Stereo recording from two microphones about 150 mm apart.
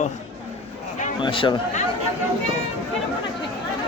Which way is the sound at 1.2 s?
35° left (ahead or behind).